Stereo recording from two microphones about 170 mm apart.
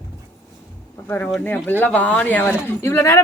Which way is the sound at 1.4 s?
10° left (ahead or behind).